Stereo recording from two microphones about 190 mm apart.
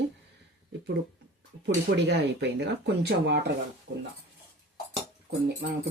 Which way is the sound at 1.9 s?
65° right (ahead or behind).